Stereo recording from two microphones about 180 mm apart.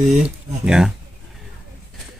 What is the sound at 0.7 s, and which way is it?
Speech, 5° right (ahead or behind).